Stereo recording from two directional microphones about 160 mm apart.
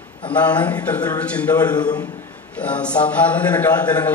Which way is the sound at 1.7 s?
25° left (ahead or behind).